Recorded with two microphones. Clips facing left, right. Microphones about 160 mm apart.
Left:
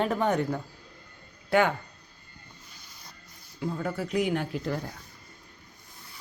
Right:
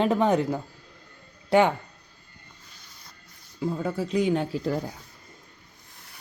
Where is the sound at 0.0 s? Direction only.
25° right (ahead or behind).